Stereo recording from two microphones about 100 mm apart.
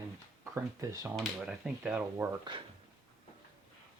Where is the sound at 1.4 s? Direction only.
10° right (ahead or behind).